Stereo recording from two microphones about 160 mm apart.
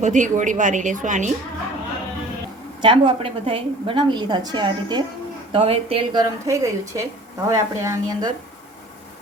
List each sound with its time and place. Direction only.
0.0 s speech: 50° right (ahead or behind)
2.8 s a woman's voice: 30° right (ahead or behind)
6.4 s a woman's voice: 20° right (ahead or behind)